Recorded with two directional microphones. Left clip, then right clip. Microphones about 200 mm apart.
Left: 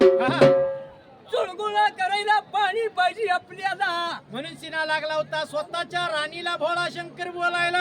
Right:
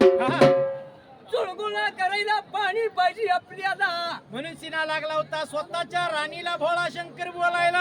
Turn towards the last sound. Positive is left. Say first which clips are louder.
# right 1 dB
turn(degrees=5)  # may be behind; listen again after turning